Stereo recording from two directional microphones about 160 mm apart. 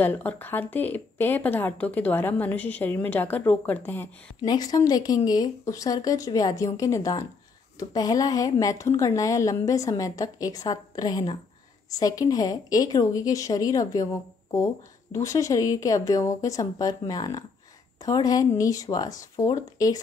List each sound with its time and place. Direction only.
0.0 s a woman's voice: 10° left (ahead or behind)
4.5 s a woman's voice: 25° left (ahead or behind)
15.1 s a woman's voice: 20° left (ahead or behind)